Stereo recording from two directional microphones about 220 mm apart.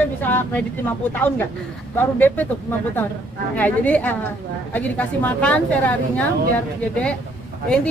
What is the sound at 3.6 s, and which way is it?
A woman's voice, 5° left (ahead or behind).